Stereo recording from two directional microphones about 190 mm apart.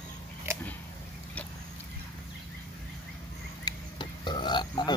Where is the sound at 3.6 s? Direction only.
25° left (ahead or behind).